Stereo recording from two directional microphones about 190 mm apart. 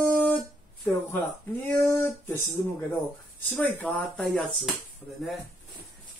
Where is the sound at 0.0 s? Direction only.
10° left (ahead or behind).